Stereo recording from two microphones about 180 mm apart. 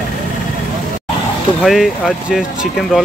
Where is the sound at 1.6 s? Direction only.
Centre (ahead or behind).